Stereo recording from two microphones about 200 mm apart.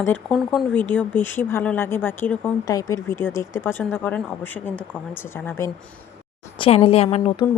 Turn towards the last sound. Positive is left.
turn(degrees=30)  # may be behind; listen again after turning